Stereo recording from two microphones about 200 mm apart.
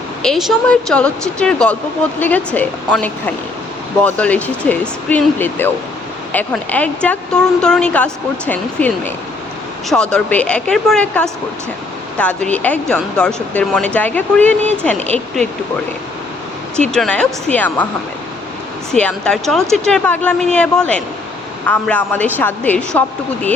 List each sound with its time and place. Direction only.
0.2 s speech: centre (ahead or behind)
14.9 s speech: 30° right (ahead or behind)
16.9 s speech: 5° left (ahead or behind)
18.9 s speech: 5° left (ahead or behind)